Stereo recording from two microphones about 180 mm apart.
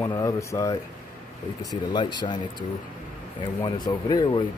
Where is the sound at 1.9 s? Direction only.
25° left (ahead or behind).